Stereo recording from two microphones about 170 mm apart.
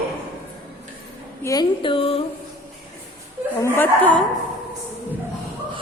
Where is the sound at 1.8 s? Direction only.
30° left (ahead or behind).